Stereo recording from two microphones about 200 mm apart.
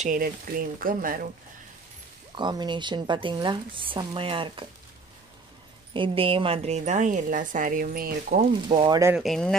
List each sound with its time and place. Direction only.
0.0 s speech: 45° right (ahead or behind)
2.3 s a woman's voice: 20° right (ahead or behind)
5.9 s a woman's voice: 25° right (ahead or behind); by 8.5 s 45° right (ahead or behind)
8.6 s a woman's voice: 20° right (ahead or behind)
9.1 s speech: centre (ahead or behind)